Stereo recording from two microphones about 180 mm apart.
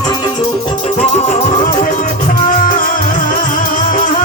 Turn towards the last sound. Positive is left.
turn(degrees=45)  # may be behind; listen again after turning